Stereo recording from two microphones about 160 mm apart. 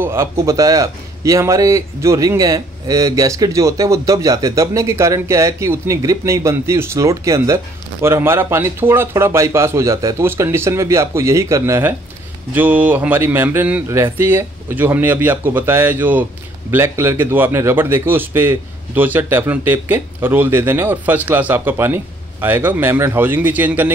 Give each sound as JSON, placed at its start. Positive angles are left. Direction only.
{"t": 0.0, "sound": "a man's voice", "side_deg": -15}